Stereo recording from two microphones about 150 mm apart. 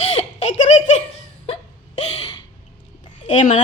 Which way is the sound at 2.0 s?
40° left (ahead or behind).